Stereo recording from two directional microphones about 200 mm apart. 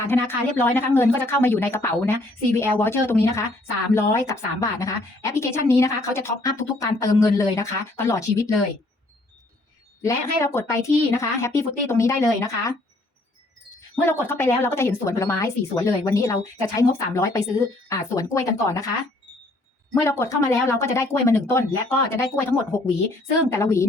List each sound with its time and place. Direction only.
0.1 s a woman's voice: 10° left (ahead or behind)
10.0 s a woman's voice: 15° left (ahead or behind)
13.9 s a woman's voice: 10° left (ahead or behind)
20.0 s a woman's voice: 15° left (ahead or behind)